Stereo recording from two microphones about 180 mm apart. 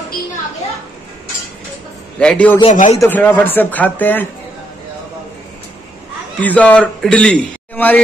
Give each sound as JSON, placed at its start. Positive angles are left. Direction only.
{"t": 2.1, "sound": "a man's voice", "side_deg": 5}
{"t": 2.7, "sound": "speech", "side_deg": 45}
{"t": 3.0, "sound": "a man's voice", "side_deg": 10}
{"t": 6.4, "sound": "a man's voice", "side_deg": 10}